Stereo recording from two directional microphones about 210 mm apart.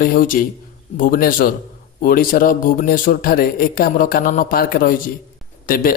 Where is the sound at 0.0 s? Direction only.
40° left (ahead or behind).